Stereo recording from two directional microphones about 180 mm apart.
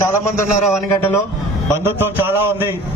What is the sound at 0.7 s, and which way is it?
Speech, 15° left (ahead or behind).